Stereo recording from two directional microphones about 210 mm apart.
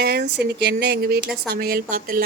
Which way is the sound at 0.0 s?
50° right (ahead or behind).